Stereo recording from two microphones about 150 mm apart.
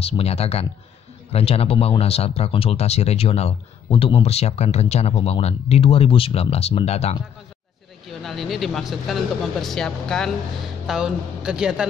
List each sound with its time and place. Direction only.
0.0 s speech: 40° left (ahead or behind)
8.1 s speech: centre (ahead or behind)